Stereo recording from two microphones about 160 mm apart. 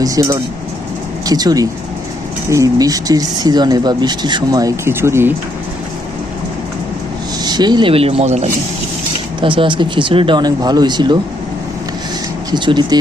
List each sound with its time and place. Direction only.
0.0 s speech: 20° right (ahead or behind)
7.4 s speech: 25° right (ahead or behind); by 8.4 s 45° right (ahead or behind)
9.4 s speech: 30° right (ahead or behind)
12.5 s speech: 30° right (ahead or behind)